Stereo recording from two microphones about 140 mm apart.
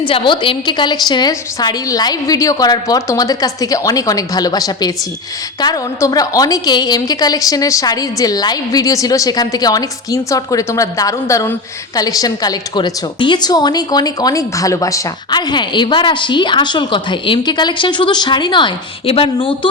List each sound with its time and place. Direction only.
0.1 s a woman's voice: 35° left (ahead or behind)